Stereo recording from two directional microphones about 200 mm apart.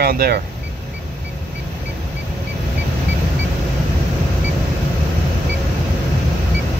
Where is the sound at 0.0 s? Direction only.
50° right (ahead or behind).